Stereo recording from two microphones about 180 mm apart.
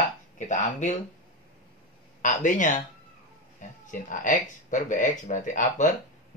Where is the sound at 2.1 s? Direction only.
45° left (ahead or behind).